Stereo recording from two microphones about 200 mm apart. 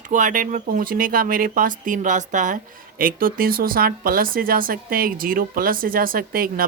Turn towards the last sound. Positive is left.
turn(degrees=-45)  # may be behind; listen again after turning